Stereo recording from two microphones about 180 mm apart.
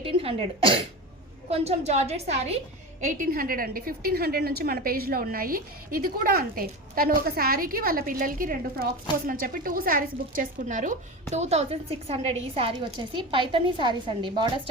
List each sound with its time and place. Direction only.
0.0 s a woman's voice: 30° right (ahead or behind)